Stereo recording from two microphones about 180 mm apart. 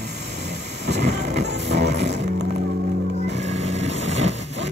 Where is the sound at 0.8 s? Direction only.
70° right (ahead or behind).